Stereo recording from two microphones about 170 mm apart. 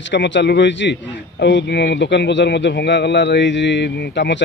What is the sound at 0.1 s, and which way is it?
A man's voice, 90° left.